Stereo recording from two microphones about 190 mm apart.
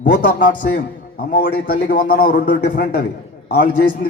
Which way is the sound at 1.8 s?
45° left (ahead or behind).